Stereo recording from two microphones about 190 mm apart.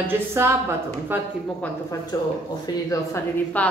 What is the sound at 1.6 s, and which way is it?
A woman's voice, 15° left (ahead or behind).